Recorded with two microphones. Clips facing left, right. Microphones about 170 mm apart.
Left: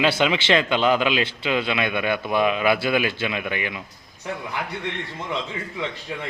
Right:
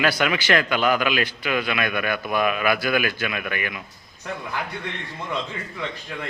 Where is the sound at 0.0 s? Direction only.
25° left (ahead or behind).